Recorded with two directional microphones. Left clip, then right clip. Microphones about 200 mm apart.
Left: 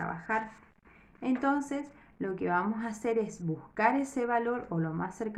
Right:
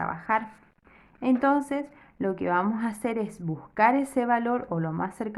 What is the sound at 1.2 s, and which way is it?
A woman's voice, 40° right (ahead or behind).